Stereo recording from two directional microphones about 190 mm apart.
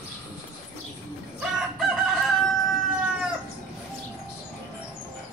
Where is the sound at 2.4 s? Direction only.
5° right (ahead or behind).